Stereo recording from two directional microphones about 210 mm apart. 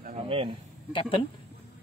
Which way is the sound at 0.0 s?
30° right (ahead or behind).